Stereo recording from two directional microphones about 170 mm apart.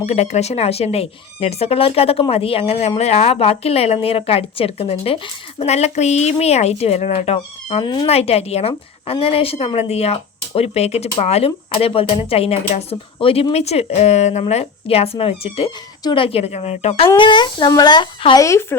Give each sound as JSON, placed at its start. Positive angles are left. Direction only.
{"t": 0.0, "sound": "speech", "side_deg": 40}
{"t": 17.2, "sound": "speech", "side_deg": 25}
{"t": 18.4, "sound": "speech", "side_deg": 15}